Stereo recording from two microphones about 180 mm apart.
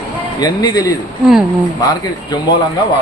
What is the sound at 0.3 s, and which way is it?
Speech, 20° left (ahead or behind).